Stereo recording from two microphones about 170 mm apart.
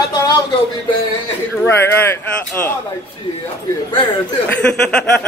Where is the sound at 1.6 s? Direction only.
15° left (ahead or behind).